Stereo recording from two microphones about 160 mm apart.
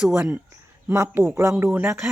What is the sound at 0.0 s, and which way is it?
Speech, 5° right (ahead or behind).